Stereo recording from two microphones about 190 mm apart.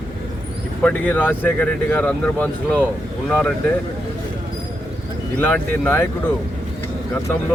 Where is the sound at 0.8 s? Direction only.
10° left (ahead or behind).